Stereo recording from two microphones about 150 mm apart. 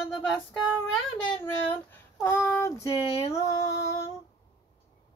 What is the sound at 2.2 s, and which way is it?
Female singing, 15° left (ahead or behind).